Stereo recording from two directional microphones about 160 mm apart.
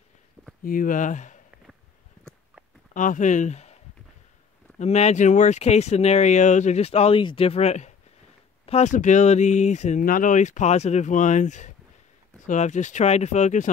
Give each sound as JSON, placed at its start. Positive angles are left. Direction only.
{"t": 0.7, "sound": "speech", "side_deg": 60}
{"t": 2.9, "sound": "speech", "side_deg": 55}